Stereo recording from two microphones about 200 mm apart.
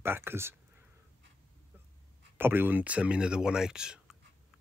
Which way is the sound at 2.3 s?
10° right (ahead or behind).